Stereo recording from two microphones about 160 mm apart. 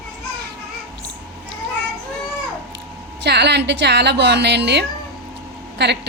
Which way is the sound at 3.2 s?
90° right.